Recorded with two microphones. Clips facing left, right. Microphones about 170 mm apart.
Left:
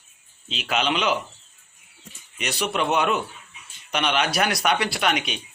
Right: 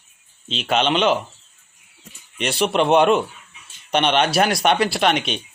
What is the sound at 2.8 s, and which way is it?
Speech, 30° right (ahead or behind).